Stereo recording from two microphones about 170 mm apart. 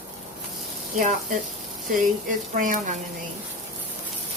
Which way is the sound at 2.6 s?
50° right (ahead or behind).